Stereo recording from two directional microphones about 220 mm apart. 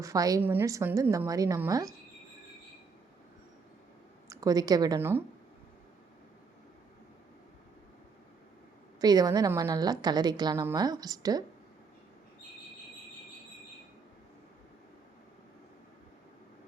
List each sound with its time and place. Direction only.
0.0 s a woman's voice: 15° right (ahead or behind)
4.3 s a woman's voice: 15° right (ahead or behind)
9.0 s a woman's voice: 15° right (ahead or behind)